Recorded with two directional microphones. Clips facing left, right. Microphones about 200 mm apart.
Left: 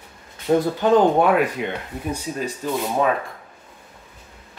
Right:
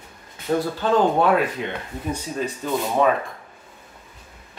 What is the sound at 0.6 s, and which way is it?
Speech, 15° left (ahead or behind).